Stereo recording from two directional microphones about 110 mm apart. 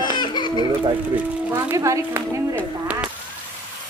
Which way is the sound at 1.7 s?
30° right (ahead or behind).